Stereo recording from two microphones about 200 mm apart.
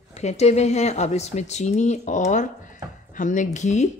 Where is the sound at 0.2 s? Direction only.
35° left (ahead or behind).